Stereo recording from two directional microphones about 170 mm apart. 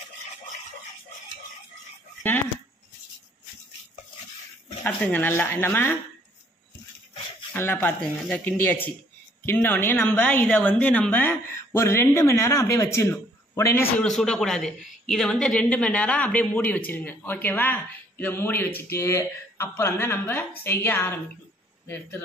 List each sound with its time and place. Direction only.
4.8 s a woman's voice: 10° left (ahead or behind)
7.5 s a woman's voice: 15° left (ahead or behind)
14.0 s a woman's voice: 5° left (ahead or behind)